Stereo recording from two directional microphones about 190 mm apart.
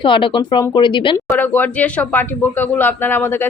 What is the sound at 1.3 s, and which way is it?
Speech, 10° left (ahead or behind).